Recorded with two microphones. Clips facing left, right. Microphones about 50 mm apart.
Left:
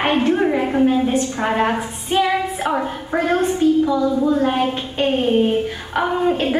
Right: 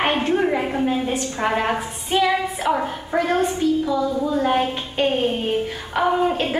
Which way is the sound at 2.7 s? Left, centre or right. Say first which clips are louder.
Left 1 dB; centre.